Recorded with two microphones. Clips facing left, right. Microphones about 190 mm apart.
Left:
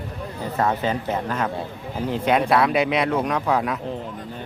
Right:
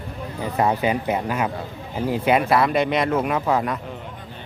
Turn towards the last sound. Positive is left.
turn(degrees=0)  # may be behind; listen again after turning